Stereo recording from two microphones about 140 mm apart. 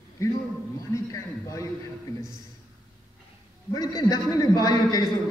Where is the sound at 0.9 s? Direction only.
20° left (ahead or behind).